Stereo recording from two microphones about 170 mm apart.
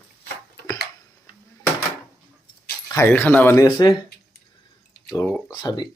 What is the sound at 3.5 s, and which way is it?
Speech, 25° left (ahead or behind).